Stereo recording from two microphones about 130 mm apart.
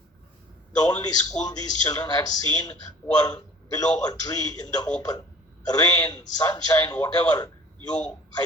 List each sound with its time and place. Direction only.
0.8 s a man's voice: 30° left (ahead or behind)